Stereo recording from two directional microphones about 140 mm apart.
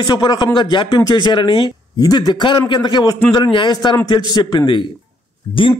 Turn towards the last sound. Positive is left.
turn(degrees=40)  # may be behind; listen again after turning